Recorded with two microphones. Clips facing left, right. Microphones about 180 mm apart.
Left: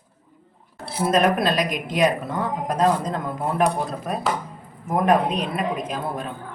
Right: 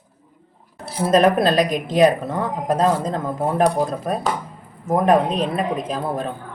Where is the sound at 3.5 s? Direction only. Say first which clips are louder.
Right 4 dB; 40° right (ahead or behind).